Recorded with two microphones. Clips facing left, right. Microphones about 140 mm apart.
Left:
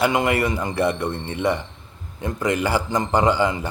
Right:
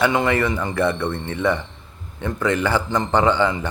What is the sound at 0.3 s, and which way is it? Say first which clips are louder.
Speech: right 1 dB; 10° left (ahead or behind).